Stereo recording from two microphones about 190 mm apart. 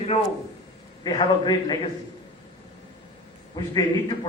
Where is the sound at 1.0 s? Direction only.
25° left (ahead or behind).